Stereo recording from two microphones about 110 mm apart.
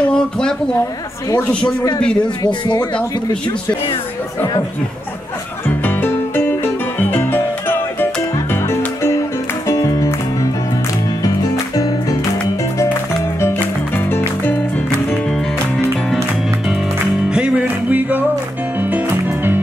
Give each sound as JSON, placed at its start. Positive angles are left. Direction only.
{"t": 0.1, "sound": "speech", "side_deg": 5}
{"t": 2.2, "sound": "speech", "side_deg": 40}
{"t": 5.7, "sound": "music", "side_deg": 20}
{"t": 13.4, "sound": "music", "side_deg": 20}
{"t": 17.3, "sound": "music", "side_deg": -10}